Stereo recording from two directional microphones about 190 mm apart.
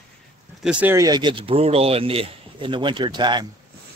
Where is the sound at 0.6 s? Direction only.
5° right (ahead or behind); by 3.4 s 25° right (ahead or behind).